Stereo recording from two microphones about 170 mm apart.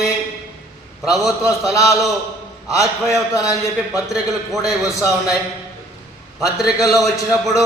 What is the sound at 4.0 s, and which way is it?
Speech, centre (ahead or behind).